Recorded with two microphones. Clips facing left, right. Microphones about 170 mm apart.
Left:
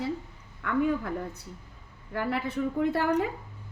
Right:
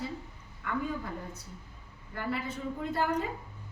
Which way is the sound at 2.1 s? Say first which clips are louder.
Left 5 dB; 70° left (ahead or behind).